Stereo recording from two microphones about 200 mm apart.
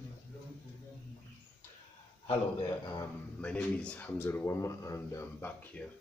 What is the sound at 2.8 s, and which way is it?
Speech, 20° left (ahead or behind).